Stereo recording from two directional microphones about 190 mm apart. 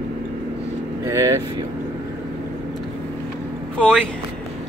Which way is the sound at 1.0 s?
15° right (ahead or behind).